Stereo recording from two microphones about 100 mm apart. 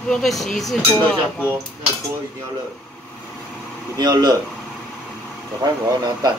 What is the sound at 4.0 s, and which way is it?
Speech, 45° right (ahead or behind).